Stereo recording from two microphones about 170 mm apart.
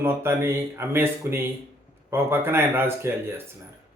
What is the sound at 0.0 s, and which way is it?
A man's voice, 15° right (ahead or behind).